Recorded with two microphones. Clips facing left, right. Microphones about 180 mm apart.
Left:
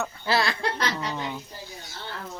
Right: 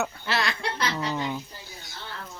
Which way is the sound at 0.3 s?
35° left (ahead or behind).